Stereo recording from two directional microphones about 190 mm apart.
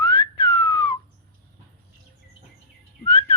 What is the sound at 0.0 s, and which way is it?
Whistling, 25° left (ahead or behind).